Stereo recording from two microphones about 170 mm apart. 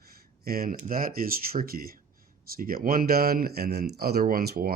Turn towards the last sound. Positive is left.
turn(degrees=-65)  # may be behind; listen again after turning